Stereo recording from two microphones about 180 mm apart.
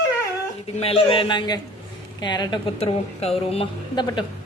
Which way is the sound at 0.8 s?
35° left (ahead or behind).